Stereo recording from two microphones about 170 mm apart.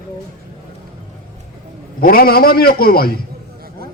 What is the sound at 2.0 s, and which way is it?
A man's voice, 60° left (ahead or behind).